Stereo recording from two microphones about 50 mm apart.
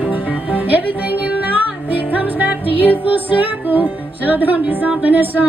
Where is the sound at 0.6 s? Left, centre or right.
Right.